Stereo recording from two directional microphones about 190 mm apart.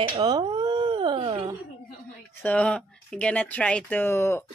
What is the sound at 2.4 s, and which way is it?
Speech, 5° left (ahead or behind).